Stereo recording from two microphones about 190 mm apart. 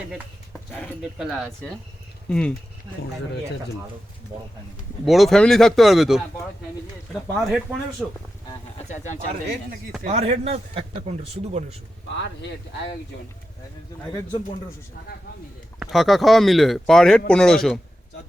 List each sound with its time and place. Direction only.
0.1 s speech: centre (ahead or behind)
5.0 s speech: centre (ahead or behind)
7.3 s speech: centre (ahead or behind)
10.0 s speech: 35° right (ahead or behind)
15.8 s speech: centre (ahead or behind)